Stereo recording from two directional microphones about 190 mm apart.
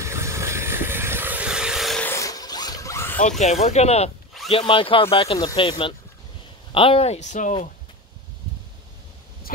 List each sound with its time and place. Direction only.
0.0 s vehicle: 15° right (ahead or behind); by 3.2 s 15° left (ahead or behind)
3.2 s speech: 40° left (ahead or behind)